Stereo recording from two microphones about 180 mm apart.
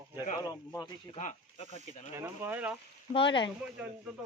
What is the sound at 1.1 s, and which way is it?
Speech, 40° left (ahead or behind).